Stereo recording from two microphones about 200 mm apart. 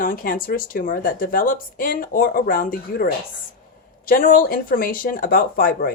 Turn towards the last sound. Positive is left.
turn(degrees=45)  # may be behind; listen again after turning